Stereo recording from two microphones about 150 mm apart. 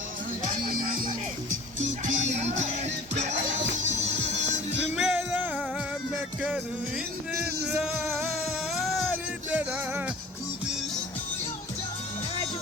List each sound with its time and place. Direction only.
0.6 s music: 65° right (ahead or behind)
1.8 s music: 55° right (ahead or behind)
4.9 s music: 5° right (ahead or behind)
8.1 s music: centre (ahead or behind)